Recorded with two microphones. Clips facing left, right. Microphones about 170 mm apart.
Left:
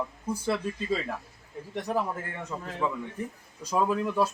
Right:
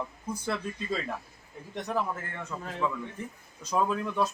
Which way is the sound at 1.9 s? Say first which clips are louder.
Left 1 dB; 15° left (ahead or behind).